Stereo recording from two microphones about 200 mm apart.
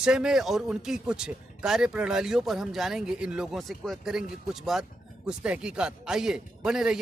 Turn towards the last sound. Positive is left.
turn(degrees=-5)  # may be behind; listen again after turning